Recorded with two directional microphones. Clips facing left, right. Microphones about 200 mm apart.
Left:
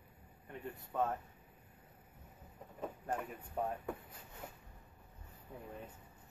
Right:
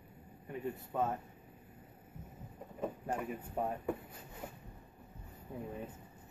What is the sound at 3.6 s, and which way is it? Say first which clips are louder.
Speech: right 1 dB; 5° right (ahead or behind).